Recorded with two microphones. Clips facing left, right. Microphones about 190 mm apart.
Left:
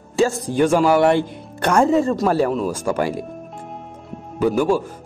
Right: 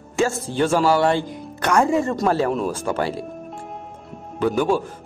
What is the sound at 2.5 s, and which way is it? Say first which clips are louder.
Speech: left 2 dB; 10° left (ahead or behind).